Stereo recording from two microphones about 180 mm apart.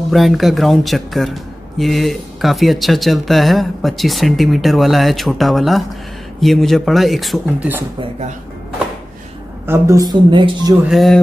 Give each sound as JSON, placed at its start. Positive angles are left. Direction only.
{"t": 0.1, "sound": "a man's voice", "side_deg": 0}
{"t": 9.7, "sound": "speech", "side_deg": -20}
{"t": 10.9, "sound": "a man's voice", "side_deg": 0}